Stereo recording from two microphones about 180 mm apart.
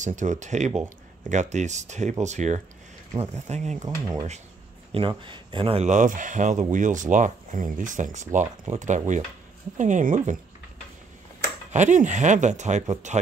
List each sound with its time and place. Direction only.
0.0 s speech: 45° right (ahead or behind)
4.9 s speech: 30° right (ahead or behind); by 10.4 s 45° right (ahead or behind)
11.7 s speech: 45° right (ahead or behind)